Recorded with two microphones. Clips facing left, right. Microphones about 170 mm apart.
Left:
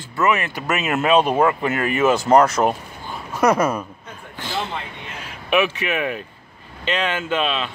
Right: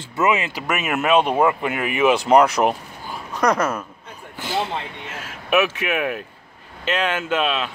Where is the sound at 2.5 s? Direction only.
5° right (ahead or behind).